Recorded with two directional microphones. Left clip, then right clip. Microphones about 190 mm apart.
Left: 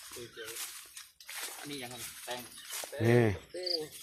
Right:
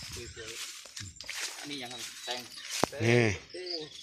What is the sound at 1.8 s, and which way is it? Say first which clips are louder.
Dishes: right 4 dB; 45° right (ahead or behind).